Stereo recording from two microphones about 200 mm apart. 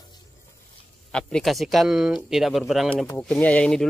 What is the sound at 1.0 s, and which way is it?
Speech, 5° left (ahead or behind).